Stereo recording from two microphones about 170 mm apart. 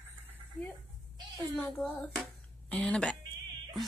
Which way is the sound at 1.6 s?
5° left (ahead or behind).